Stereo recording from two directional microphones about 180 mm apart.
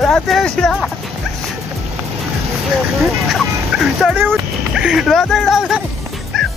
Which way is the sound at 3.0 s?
Centre (ahead or behind).